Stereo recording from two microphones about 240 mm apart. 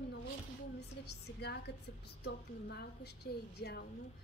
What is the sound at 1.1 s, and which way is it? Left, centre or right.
A woman's voice, left.